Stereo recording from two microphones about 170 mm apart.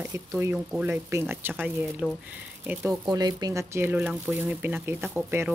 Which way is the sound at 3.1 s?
20° right (ahead or behind).